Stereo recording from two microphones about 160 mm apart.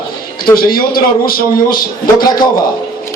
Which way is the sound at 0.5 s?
65° left (ahead or behind).